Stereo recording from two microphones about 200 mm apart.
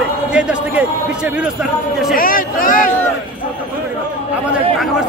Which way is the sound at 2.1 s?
45° left (ahead or behind).